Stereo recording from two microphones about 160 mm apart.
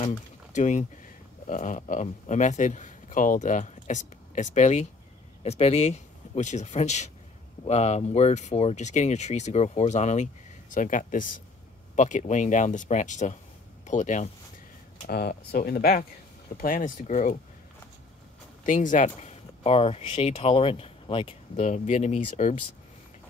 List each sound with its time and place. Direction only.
0.1 s speech: 50° left (ahead or behind)
15.0 s speech: 75° left (ahead or behind); by 17.4 s 55° left (ahead or behind)
18.7 s speech: 50° left (ahead or behind)